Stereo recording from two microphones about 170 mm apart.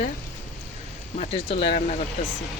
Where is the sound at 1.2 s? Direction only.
35° left (ahead or behind).